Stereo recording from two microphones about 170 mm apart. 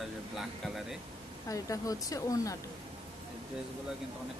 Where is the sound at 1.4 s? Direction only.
20° left (ahead or behind).